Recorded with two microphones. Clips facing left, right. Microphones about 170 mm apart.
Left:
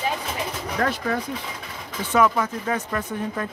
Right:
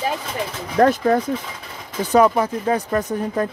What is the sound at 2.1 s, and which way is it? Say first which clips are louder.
Speech: right 5 dB; 35° right (ahead or behind).